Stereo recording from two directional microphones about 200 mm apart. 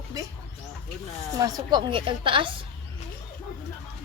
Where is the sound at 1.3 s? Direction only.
20° right (ahead or behind).